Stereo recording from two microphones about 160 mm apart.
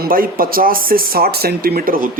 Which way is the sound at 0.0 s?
65° right (ahead or behind).